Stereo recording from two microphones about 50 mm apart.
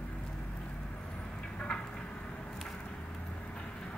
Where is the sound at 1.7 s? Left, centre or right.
Centre.